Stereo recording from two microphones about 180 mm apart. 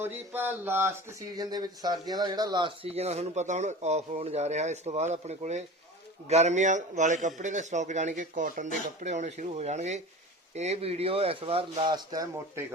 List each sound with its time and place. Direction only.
0.0 s a man's voice: 10° right (ahead or behind); by 11.9 s 30° right (ahead or behind)
12.1 s speech: 20° right (ahead or behind)